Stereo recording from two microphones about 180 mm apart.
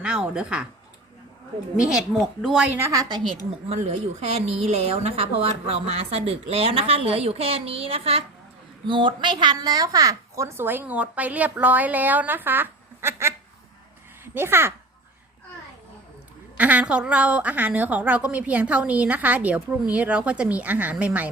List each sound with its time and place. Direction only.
0.0 s a woman's voice: 5° right (ahead or behind)
1.8 s a woman's voice: 5° right (ahead or behind)
2.7 s a woman's voice: 15° right (ahead or behind)
3.7 s speech: 40° right (ahead or behind); by 13.3 s 15° right (ahead or behind)
14.3 s speech: 15° right (ahead or behind)
16.6 s speech: 10° right (ahead or behind)